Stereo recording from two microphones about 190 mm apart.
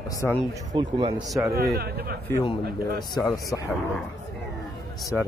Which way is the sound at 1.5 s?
55° right (ahead or behind).